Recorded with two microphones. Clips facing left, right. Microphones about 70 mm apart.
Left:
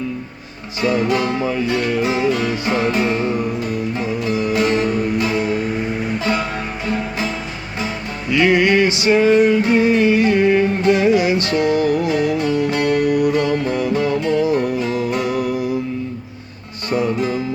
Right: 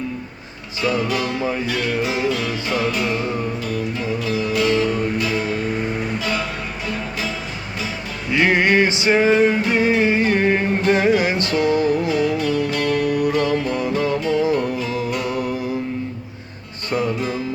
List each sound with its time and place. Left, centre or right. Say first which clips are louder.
0.8 s music: left 3 dB; left
8.3 s music: left 2 dB; right
11.4 s music: left 1 dB; left
13.0 s music: left 3 dB; left
13.5 s music: left 2 dB; left
15.1 s music: left 3 dB; left
16.9 s music: left 3 dB; left